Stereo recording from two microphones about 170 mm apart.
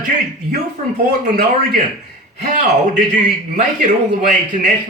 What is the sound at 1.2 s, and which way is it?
A man's voice, 50° right (ahead or behind).